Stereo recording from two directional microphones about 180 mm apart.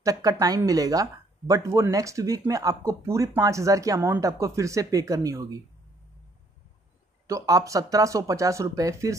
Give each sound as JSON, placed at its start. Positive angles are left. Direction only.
{"t": 0.0, "sound": "speech", "side_deg": -20}
{"t": 7.2, "sound": "speech", "side_deg": -20}